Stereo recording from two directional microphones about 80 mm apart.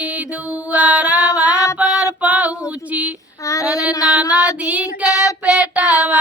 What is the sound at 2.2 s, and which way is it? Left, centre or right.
Female singing, centre.